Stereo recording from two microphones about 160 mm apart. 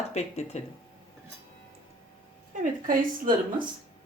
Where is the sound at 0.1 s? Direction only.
45° left (ahead or behind).